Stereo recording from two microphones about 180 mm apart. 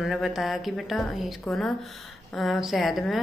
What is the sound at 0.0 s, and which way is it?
A woman's voice, centre (ahead or behind).